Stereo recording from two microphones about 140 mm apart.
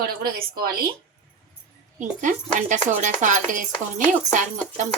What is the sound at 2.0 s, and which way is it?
Speech, 65° right (ahead or behind).